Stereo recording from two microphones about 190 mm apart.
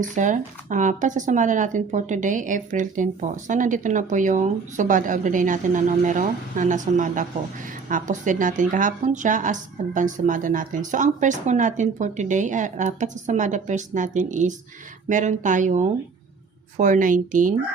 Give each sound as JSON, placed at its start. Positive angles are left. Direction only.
{"t": 0.0, "sound": "speech", "side_deg": -40}